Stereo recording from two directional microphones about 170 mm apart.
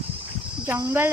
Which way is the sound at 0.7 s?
15° right (ahead or behind).